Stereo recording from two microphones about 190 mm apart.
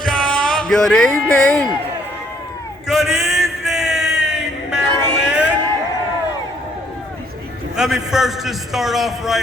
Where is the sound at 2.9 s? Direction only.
Centre (ahead or behind).